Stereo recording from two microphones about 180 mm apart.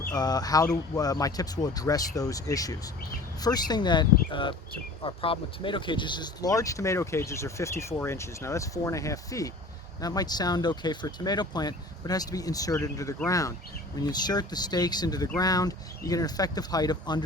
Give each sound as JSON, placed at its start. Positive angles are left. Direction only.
{"t": 0.1, "sound": "speech", "side_deg": 20}